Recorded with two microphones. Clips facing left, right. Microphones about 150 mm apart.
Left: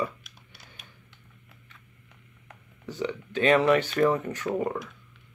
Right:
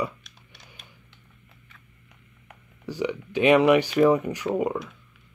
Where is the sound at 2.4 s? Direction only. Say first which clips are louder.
Right 4 dB; 10° right (ahead or behind).